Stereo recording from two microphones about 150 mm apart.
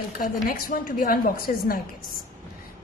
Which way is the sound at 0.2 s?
70° left (ahead or behind).